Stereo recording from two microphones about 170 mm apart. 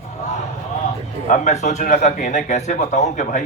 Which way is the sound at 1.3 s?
45° left (ahead or behind).